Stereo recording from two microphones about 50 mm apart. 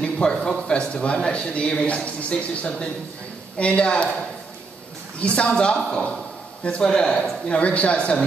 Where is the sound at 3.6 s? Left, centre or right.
Left.